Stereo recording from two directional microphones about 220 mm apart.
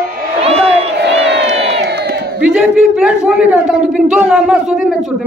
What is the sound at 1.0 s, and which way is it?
Crowd, 50° right (ahead or behind).